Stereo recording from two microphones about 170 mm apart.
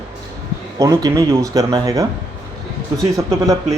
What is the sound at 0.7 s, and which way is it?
Speech, 20° right (ahead or behind).